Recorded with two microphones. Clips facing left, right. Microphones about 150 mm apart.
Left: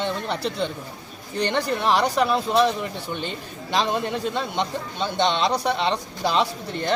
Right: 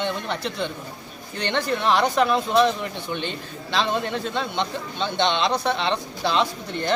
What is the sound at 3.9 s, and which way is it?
Speech, 10° left (ahead or behind).